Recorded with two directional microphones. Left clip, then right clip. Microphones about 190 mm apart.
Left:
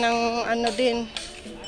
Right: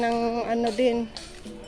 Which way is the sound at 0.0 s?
25° right (ahead or behind).